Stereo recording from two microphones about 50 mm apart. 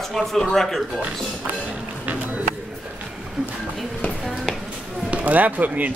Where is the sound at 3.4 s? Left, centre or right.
Centre.